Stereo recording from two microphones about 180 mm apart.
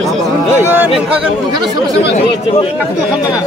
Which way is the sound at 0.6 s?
10° right (ahead or behind).